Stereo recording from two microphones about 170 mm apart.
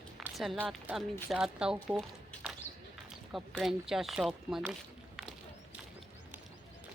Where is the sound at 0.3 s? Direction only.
5° right (ahead or behind).